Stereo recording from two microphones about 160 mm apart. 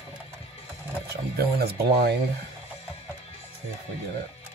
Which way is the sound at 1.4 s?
85° right.